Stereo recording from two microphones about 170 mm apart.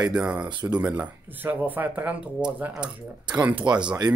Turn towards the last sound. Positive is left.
turn(degrees=-5)  # may be behind; listen again after turning